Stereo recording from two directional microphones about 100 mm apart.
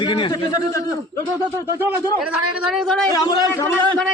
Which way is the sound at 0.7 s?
30° left (ahead or behind).